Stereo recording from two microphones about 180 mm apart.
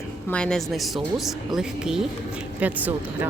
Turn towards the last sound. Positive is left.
turn(degrees=-10)  # may be behind; listen again after turning